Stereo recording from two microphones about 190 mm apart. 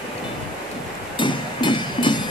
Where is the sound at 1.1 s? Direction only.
25° left (ahead or behind).